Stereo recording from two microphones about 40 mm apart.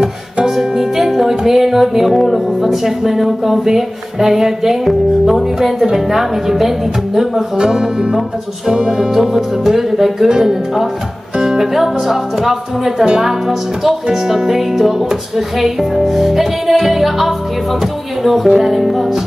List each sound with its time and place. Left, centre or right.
0.5 s music: centre
1.3 s speech: centre
7.5 s speech: centre
8.6 s music: right
9.1 s speech: centre
11.3 s music: centre
12.0 s speech: centre
13.0 s music: right
13.3 s speech: centre